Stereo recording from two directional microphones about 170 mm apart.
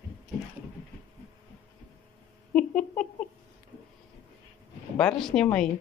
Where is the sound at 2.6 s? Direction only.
5° left (ahead or behind).